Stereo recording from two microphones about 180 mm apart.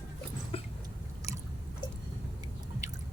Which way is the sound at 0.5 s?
30° left (ahead or behind).